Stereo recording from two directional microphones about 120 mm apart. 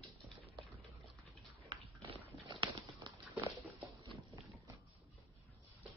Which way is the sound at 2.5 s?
40° right (ahead or behind).